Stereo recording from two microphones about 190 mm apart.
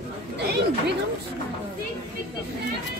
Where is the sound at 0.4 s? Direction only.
60° right (ahead or behind).